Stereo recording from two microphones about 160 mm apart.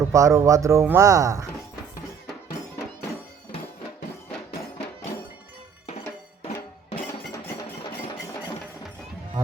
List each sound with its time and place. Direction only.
0.1 s speech: 20° right (ahead or behind)
7.9 s engine: 25° left (ahead or behind)